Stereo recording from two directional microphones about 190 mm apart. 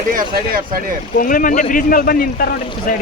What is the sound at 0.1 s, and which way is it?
Speech, 50° right (ahead or behind).